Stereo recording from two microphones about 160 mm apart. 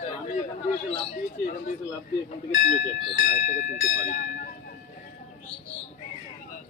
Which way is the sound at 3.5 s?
50° left (ahead or behind).